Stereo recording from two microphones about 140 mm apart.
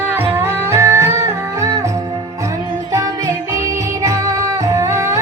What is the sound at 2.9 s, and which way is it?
Music, 25° right (ahead or behind).